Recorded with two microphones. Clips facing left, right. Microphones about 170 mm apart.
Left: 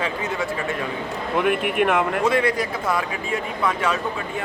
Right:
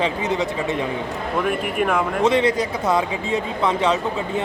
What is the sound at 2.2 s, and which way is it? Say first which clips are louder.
Speech: right 3 dB; 20° right (ahead or behind).